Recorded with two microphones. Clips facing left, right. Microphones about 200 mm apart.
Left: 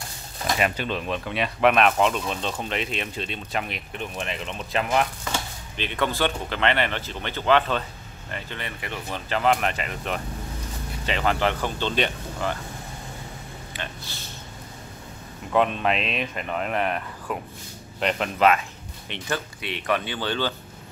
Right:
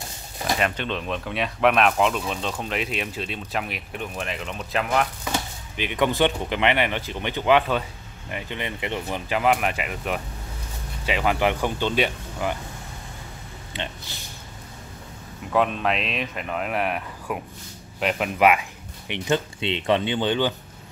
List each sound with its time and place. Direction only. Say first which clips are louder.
0.6 s speech: left 3 dB; 5° left (ahead or behind)
5.2 s speech: right 2 dB; 10° right (ahead or behind)
9.3 s speech: even; 10° right (ahead or behind)
15.5 s speech: even; centre (ahead or behind); by 20.5 s 15° right (ahead or behind)